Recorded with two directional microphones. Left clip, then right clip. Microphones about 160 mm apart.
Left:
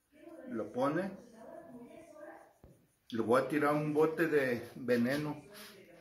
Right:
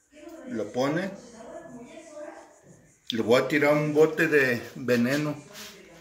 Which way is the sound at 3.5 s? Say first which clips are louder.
Right 9 dB; 20° right (ahead or behind).